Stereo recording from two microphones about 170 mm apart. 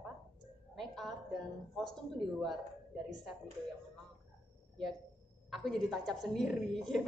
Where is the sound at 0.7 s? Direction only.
Centre (ahead or behind).